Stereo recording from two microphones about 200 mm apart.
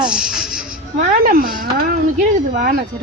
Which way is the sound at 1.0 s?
45° right (ahead or behind).